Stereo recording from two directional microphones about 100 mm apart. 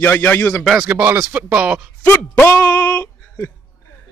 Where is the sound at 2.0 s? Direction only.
20° left (ahead or behind).